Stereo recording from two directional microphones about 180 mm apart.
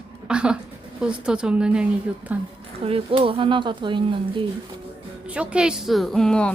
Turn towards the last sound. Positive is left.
turn(degrees=5)  # may be behind; listen again after turning